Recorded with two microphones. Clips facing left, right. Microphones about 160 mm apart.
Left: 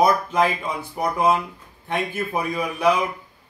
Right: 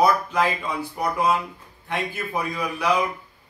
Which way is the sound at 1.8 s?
20° left (ahead or behind).